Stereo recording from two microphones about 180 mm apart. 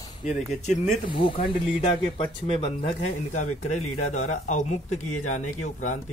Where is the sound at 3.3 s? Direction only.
40° left (ahead or behind).